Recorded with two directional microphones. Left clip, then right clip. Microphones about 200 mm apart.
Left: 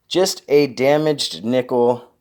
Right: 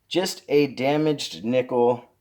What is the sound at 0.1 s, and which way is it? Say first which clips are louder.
Speech: left 6 dB; 30° left (ahead or behind).